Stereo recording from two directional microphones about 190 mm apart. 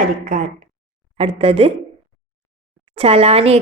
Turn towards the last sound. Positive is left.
turn(degrees=-35)  # may be behind; listen again after turning